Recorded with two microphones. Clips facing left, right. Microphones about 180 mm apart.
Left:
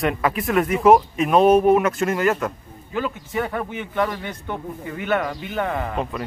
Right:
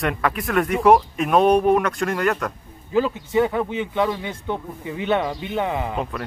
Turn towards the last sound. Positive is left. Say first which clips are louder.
# right 1 dB
turn(degrees=-15)  # may be behind; listen again after turning